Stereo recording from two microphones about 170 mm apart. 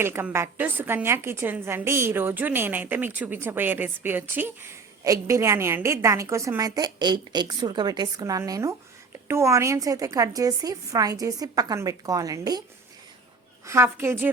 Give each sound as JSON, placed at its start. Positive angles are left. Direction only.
{"t": 0.0, "sound": "a woman's voice", "side_deg": -15}
{"t": 13.7, "sound": "a woman's voice", "side_deg": -15}